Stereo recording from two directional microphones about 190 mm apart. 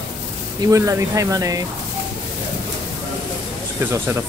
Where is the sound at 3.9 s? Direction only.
15° right (ahead or behind).